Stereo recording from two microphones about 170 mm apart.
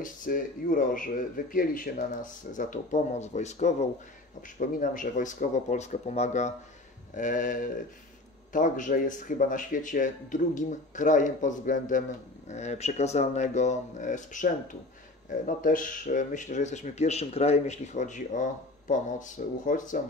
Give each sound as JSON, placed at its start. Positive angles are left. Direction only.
{"t": 0.0, "sound": "speech", "side_deg": 50}